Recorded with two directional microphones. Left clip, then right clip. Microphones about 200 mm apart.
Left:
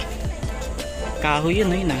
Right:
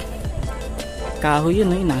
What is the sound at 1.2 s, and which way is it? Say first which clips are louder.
Speech: right 2 dB; 30° right (ahead or behind).